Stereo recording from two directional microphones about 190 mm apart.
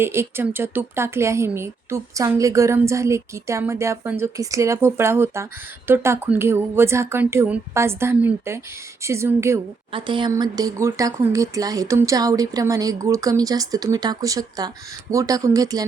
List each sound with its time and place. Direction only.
0.0 s speech: 15° right (ahead or behind)
9.9 s speech: 25° right (ahead or behind)